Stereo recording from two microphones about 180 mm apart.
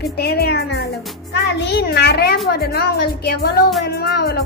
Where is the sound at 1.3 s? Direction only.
75° left (ahead or behind).